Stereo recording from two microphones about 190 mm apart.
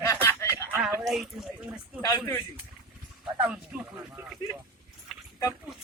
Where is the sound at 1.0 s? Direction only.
Centre (ahead or behind).